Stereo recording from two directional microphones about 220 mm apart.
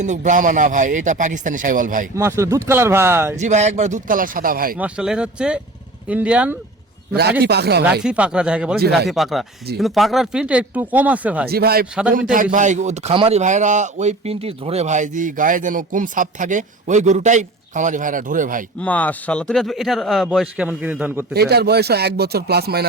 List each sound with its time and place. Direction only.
0.0 s a man's voice: 35° right (ahead or behind)
2.1 s speech: 10° right (ahead or behind)
3.3 s a man's voice: 30° right (ahead or behind)
4.8 s speech: 5° right (ahead or behind)
7.4 s speech: 45° right (ahead or behind)
8.0 s speech: 5° right (ahead or behind)
11.4 s a man's voice: 45° right (ahead or behind)
18.8 s speech: 5° left (ahead or behind)
21.3 s speech: 45° right (ahead or behind)